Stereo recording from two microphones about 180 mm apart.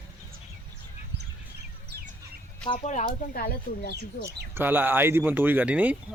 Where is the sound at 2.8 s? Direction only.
45° left (ahead or behind).